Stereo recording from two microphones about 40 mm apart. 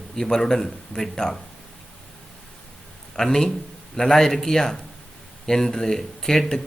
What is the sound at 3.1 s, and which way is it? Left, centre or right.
A man's voice, centre.